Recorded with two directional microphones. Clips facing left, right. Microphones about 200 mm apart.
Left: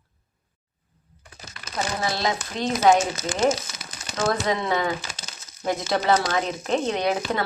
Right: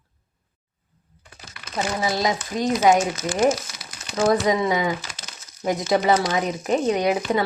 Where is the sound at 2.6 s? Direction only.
45° right (ahead or behind).